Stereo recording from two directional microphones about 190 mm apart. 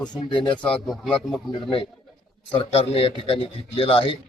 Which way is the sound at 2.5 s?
30° left (ahead or behind).